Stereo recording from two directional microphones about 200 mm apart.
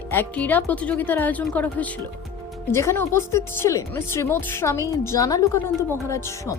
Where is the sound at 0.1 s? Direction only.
10° left (ahead or behind).